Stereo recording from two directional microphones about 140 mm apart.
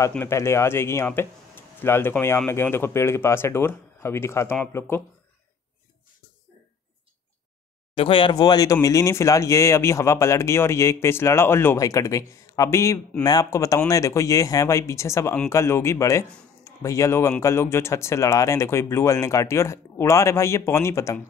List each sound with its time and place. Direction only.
0.1 s speech: 15° left (ahead or behind)
7.9 s speech: 40° left (ahead or behind); by 21.2 s 20° left (ahead or behind)